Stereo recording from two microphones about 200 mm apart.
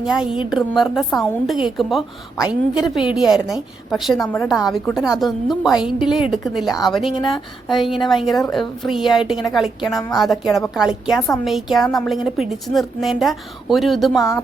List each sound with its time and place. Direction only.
0.0 s a woman's voice: 5° right (ahead or behind)
7.2 s speech: 25° left (ahead or behind)
7.7 s a woman's voice: centre (ahead or behind)